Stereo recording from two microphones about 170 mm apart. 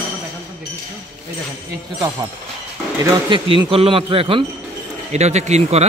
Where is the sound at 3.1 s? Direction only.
30° right (ahead or behind).